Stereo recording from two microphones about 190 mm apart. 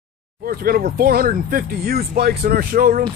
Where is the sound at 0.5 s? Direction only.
50° right (ahead or behind).